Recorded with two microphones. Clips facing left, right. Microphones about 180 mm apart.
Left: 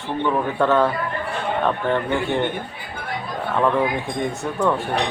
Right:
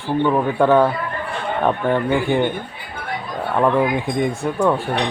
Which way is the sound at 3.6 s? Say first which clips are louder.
Right 3 dB; 15° right (ahead or behind).